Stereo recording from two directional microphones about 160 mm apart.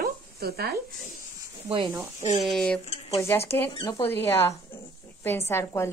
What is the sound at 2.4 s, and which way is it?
Speech, 5° left (ahead or behind).